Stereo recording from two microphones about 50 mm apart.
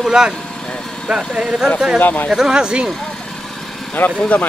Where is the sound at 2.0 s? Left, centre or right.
Left.